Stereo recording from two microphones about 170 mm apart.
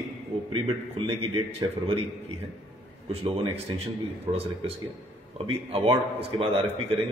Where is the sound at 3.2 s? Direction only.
35° right (ahead or behind).